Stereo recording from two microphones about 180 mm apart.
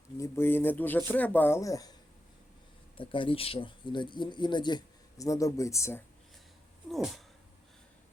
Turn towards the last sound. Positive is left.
turn(degrees=0)  # may be behind; listen again after turning